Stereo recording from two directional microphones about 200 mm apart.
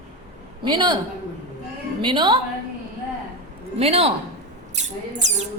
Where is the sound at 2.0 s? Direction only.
25° right (ahead or behind).